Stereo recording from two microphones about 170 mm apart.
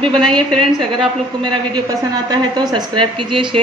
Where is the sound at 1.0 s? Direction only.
30° right (ahead or behind).